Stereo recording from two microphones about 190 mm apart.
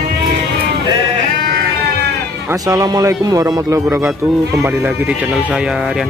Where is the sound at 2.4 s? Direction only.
15° right (ahead or behind); by 6.1 s centre (ahead or behind).